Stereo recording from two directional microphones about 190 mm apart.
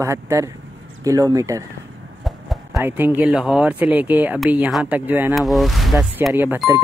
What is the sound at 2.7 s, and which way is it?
Speech, 10° right (ahead or behind).